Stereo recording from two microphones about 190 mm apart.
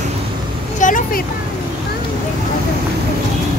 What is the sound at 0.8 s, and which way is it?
Vehicle, 45° left (ahead or behind).